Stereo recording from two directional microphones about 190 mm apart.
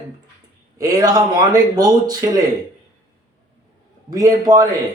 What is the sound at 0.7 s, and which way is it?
A man's voice, 20° right (ahead or behind).